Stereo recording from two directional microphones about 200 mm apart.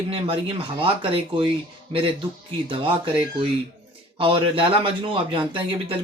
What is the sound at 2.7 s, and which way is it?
Speech, 25° right (ahead or behind).